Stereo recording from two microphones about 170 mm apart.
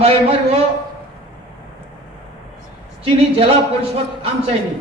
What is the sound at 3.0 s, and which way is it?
Speech, 35° right (ahead or behind).